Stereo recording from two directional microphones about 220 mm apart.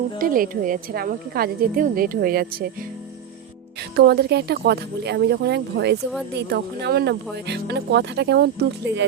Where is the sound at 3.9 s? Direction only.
45° right (ahead or behind).